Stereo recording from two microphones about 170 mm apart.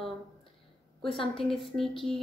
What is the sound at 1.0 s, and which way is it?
Speech, 30° left (ahead or behind).